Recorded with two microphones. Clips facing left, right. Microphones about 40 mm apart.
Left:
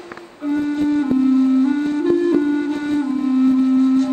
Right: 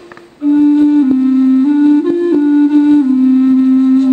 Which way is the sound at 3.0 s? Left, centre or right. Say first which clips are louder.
Right 10 dB; centre.